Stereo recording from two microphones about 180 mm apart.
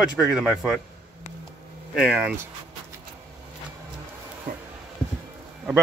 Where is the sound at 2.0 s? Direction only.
5° right (ahead or behind).